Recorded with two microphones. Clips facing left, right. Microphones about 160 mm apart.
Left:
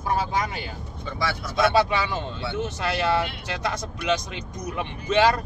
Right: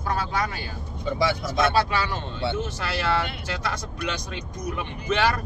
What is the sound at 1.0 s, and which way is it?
Speech, 20° right (ahead or behind).